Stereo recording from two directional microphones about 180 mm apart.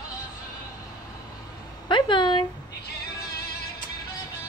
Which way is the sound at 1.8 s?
25° left (ahead or behind).